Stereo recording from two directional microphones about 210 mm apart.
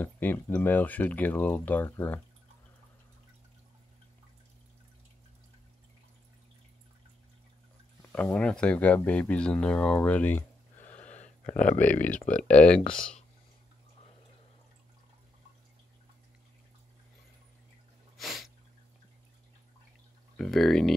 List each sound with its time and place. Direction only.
0.0 s speech: 10° left (ahead or behind)
8.1 s speech: 5° left (ahead or behind)
11.1 s a sound: 35° left (ahead or behind)
11.8 s speech: 5° left (ahead or behind)
18.1 s sneeze: centre (ahead or behind)
20.3 s speech: centre (ahead or behind)